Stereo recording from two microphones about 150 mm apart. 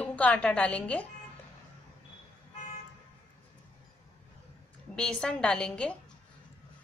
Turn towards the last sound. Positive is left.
turn(degrees=5)  # may be behind; listen again after turning